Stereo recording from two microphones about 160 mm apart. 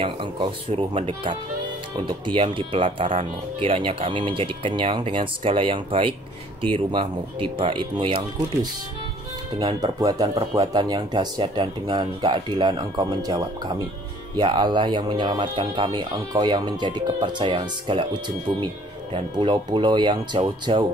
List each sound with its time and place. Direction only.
0.0 s speech: 30° right (ahead or behind)
7.5 s speech: 30° right (ahead or behind)
9.6 s speech: 25° right (ahead or behind)